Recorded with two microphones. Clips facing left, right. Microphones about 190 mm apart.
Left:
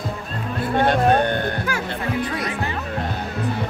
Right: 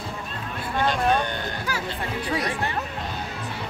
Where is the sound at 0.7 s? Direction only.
55° left (ahead or behind).